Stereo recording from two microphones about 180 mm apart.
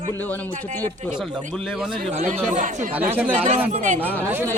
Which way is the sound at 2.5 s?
45° right (ahead or behind).